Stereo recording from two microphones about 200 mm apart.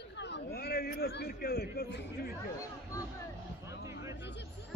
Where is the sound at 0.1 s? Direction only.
60° left (ahead or behind).